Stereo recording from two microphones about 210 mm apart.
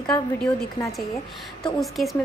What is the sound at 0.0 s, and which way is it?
A woman's voice, 5° left (ahead or behind).